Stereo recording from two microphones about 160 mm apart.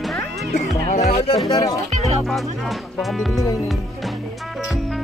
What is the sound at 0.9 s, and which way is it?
Speech, 45° left (ahead or behind).